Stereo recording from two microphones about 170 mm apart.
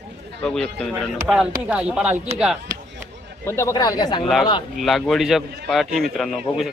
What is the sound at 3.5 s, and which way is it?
Speech, 15° left (ahead or behind).